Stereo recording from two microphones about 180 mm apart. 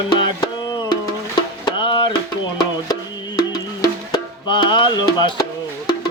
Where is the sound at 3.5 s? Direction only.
20° left (ahead or behind).